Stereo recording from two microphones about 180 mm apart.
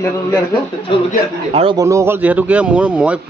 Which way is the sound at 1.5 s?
30° right (ahead or behind).